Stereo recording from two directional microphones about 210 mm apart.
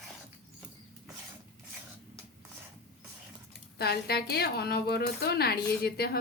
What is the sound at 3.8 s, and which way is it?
A woman's voice, 50° left (ahead or behind).